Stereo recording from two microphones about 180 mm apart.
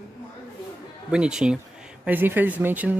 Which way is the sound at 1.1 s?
5° right (ahead or behind).